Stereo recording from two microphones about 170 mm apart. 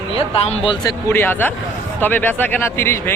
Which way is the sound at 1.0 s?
10° left (ahead or behind).